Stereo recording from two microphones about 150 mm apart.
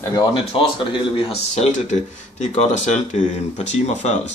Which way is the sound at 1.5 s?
50° left (ahead or behind).